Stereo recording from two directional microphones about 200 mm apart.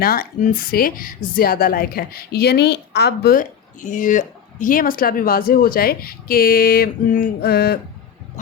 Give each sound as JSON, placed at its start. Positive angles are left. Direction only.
{"t": 0.0, "sound": "a woman's voice", "side_deg": 50}